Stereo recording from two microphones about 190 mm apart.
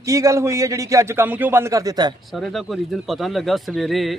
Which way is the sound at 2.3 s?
Centre (ahead or behind).